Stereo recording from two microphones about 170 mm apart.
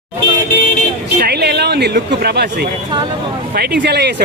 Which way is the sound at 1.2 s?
75° right (ahead or behind).